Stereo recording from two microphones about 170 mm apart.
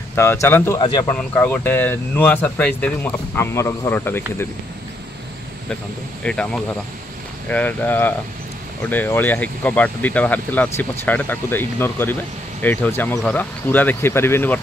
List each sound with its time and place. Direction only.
0.1 s speech: 15° left (ahead or behind)
0.7 s speech: 25° left (ahead or behind)
1.0 s speech: 10° left (ahead or behind)
6.2 s speech: 5° left (ahead or behind)